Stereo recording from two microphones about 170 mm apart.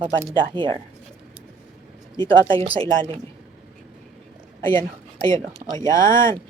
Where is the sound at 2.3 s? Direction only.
30° right (ahead or behind).